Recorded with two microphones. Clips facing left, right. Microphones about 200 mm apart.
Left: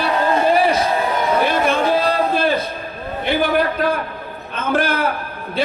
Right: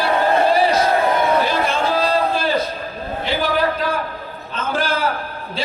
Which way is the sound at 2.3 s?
55° left (ahead or behind).